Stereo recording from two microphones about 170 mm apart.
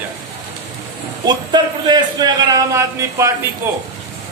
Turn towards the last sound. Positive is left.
turn(degrees=-15)  # may be behind; listen again after turning